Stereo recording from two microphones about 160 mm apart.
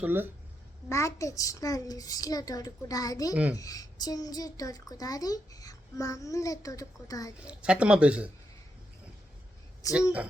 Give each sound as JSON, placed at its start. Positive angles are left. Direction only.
{"t": 0.0, "sound": "speech", "side_deg": -15}
{"t": 0.9, "sound": "a child's voice", "side_deg": 20}
{"t": 7.4, "sound": "speech", "side_deg": -5}
{"t": 9.8, "sound": "a child's voice", "side_deg": 20}